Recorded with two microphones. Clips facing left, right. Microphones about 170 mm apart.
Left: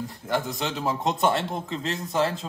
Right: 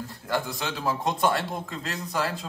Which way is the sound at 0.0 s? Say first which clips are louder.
Left 2 dB; 20° left (ahead or behind).